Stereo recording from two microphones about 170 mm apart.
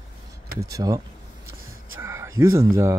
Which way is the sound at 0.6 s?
20° right (ahead or behind).